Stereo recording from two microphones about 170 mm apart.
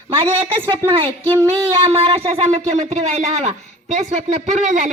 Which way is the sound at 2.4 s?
40° right (ahead or behind).